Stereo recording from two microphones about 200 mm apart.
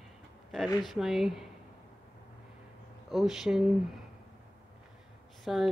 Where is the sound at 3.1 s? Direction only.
Centre (ahead or behind).